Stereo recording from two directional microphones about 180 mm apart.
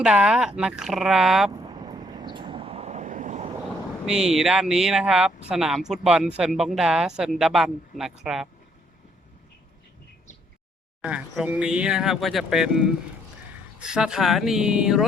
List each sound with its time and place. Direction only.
0.0 s speech: 5° right (ahead or behind)
1.5 s vehicle: 25° right (ahead or behind); by 3.5 s 40° right (ahead or behind)
4.0 s speech: 5° right (ahead or behind)
11.0 s speech: 5° right (ahead or behind)